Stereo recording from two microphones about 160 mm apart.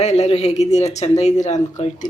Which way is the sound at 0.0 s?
45° left (ahead or behind).